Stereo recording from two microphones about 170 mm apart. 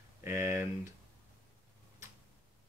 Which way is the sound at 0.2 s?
15° right (ahead or behind).